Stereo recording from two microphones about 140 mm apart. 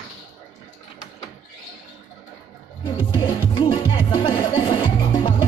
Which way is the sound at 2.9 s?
35° left (ahead or behind).